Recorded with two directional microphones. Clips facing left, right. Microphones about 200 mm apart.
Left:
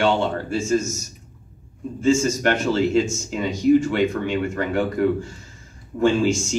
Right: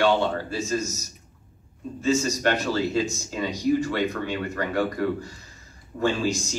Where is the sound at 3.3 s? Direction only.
20° left (ahead or behind).